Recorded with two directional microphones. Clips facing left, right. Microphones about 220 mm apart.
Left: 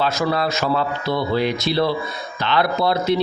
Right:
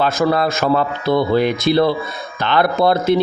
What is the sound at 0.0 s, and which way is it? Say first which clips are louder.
Speech: right 4 dB; 50° right (ahead or behind).